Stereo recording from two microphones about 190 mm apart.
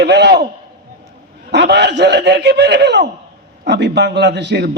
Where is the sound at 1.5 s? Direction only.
65° right (ahead or behind).